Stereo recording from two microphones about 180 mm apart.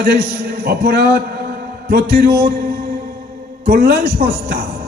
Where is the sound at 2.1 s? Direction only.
60° right (ahead or behind).